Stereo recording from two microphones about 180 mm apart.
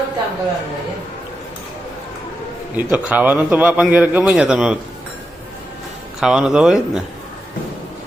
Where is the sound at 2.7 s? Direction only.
10° right (ahead or behind).